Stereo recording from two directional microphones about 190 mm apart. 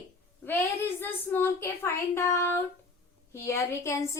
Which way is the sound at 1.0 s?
10° left (ahead or behind).